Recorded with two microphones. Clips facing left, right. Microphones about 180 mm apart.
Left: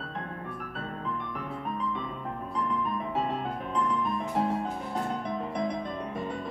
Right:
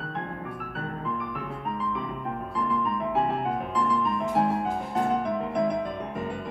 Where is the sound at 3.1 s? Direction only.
50° right (ahead or behind).